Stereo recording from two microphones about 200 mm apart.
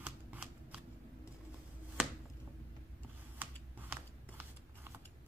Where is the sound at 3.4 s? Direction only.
10° right (ahead or behind).